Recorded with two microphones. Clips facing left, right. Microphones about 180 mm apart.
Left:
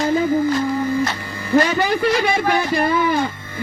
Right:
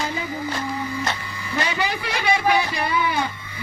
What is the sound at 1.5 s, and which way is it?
A man's voice, 45° left (ahead or behind).